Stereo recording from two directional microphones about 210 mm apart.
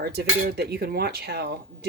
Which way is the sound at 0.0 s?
50° right (ahead or behind).